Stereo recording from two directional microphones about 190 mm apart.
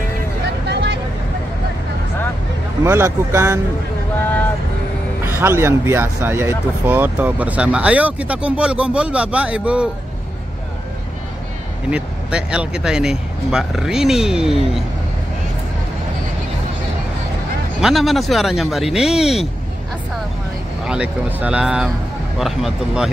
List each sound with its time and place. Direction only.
0.7 s vehicle: 65° right (ahead or behind)
2.8 s speech: 15° right (ahead or behind)
5.2 s speech: 10° right (ahead or behind)
11.9 s speech: 5° right (ahead or behind)
17.7 s speech: centre (ahead or behind)
20.8 s speech: 5° right (ahead or behind)